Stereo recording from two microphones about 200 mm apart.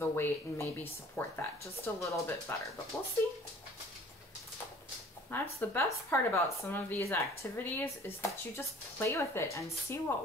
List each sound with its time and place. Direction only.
0.0 s a woman's voice: 10° left (ahead or behind)
5.3 s a woman's voice: 10° left (ahead or behind)